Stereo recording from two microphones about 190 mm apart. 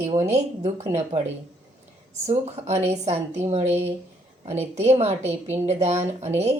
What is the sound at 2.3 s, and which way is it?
Speech, 35° right (ahead or behind).